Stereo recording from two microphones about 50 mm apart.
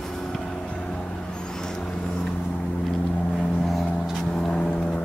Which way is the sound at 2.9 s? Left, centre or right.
Centre.